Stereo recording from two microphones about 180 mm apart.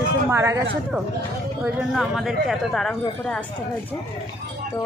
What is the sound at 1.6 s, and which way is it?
Speech, centre (ahead or behind).